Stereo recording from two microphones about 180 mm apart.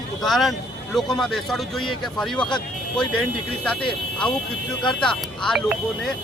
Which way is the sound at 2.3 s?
25° left (ahead or behind).